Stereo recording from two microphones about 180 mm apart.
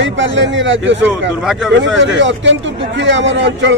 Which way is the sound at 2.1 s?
90° right.